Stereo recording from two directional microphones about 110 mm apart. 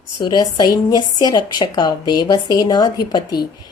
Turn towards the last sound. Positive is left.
turn(degrees=40)  # may be behind; listen again after turning